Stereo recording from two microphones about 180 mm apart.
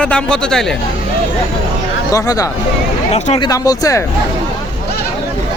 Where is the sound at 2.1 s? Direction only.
20° left (ahead or behind).